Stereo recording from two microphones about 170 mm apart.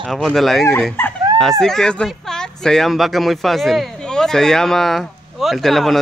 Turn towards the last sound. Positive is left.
turn(degrees=0)  # may be behind; listen again after turning